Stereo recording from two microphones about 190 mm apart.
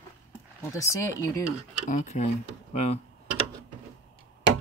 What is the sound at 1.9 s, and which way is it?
Speech, 40° left (ahead or behind).